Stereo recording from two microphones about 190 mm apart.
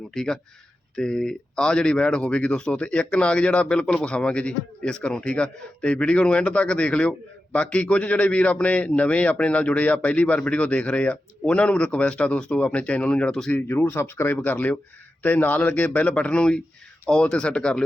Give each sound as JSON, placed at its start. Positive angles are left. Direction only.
{"t": 0.1, "sound": "speech", "side_deg": 5}